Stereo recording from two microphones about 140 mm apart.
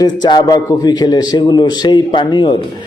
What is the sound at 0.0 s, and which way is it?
A man's voice, 30° left (ahead or behind).